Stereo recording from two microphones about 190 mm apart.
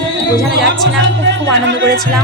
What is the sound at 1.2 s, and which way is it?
Speech, 75° right (ahead or behind).